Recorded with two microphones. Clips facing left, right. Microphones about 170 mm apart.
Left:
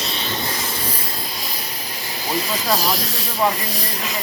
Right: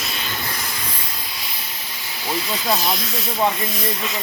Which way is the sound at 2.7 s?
35° left (ahead or behind).